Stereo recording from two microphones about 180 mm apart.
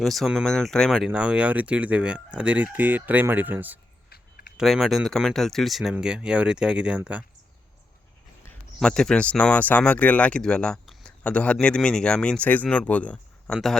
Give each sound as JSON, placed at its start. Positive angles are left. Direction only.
{"t": 0.0, "sound": "speech", "side_deg": 0}
{"t": 4.1, "sound": "a sound", "side_deg": 55}
{"t": 4.5, "sound": "speech", "side_deg": 0}
{"t": 8.4, "sound": "speech", "side_deg": 5}